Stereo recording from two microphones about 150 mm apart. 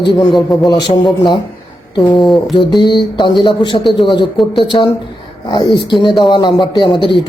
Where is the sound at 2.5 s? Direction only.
30° left (ahead or behind).